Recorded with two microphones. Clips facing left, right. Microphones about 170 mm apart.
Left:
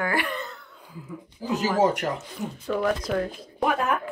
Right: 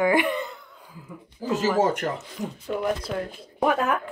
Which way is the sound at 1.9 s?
35° right (ahead or behind).